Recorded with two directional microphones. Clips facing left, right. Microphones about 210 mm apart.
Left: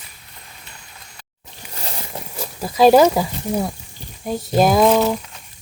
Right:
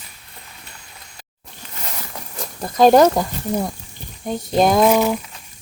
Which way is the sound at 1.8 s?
30° left (ahead or behind).